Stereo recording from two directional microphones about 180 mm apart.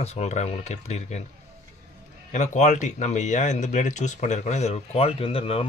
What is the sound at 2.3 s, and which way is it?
Speech, 40° left (ahead or behind).